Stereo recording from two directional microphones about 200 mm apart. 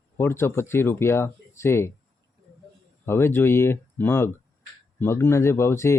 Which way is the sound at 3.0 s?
10° left (ahead or behind).